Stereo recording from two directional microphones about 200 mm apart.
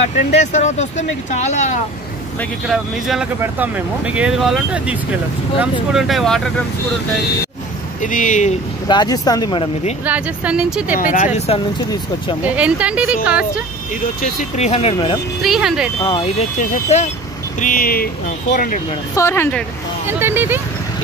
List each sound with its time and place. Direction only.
0.3 s speech: 35° left (ahead or behind)
2.7 s speech: 5° right (ahead or behind)
8.0 s speech: 40° left (ahead or behind)
8.8 s speech: 20° left (ahead or behind)
10.0 s speech: 5° right (ahead or behind)
11.0 s speech: 40° left (ahead or behind)
11.3 s speech: 30° left (ahead or behind)
12.4 s speech: 5° right (ahead or behind)
14.2 s speech: 35° left (ahead or behind)
15.4 s speech: centre (ahead or behind)
16.0 s speech: 25° left (ahead or behind)
19.1 s speech: 10° left (ahead or behind)
20.1 s speech: 10° right (ahead or behind)